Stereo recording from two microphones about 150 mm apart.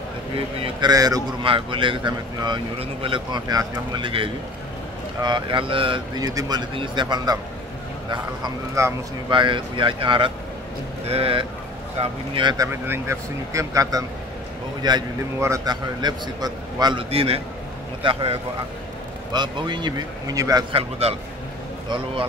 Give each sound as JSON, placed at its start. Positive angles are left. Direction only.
{"t": 0.7, "sound": "a man's voice", "side_deg": -25}
{"t": 8.8, "sound": "a man's voice", "side_deg": -20}
{"t": 9.3, "sound": "speech", "side_deg": -35}
{"t": 12.8, "sound": "a man's voice", "side_deg": -15}
{"t": 17.1, "sound": "a man's voice", "side_deg": -40}
{"t": 20.7, "sound": "speech", "side_deg": -40}